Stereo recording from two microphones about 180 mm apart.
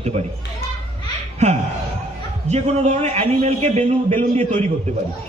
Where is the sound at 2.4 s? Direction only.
40° right (ahead or behind).